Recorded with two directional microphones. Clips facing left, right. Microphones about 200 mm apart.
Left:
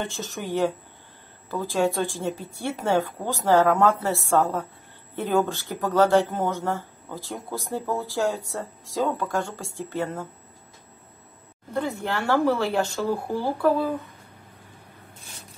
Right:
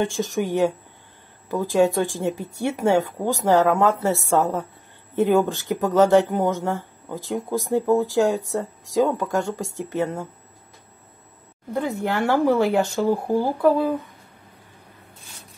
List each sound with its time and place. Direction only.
0.0 s speech: 15° right (ahead or behind)
11.7 s speech: 15° right (ahead or behind)